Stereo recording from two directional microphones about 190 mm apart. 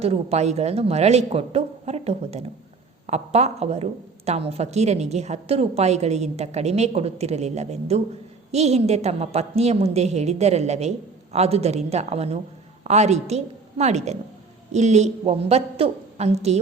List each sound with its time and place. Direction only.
0.0 s a woman's voice: 35° right (ahead or behind)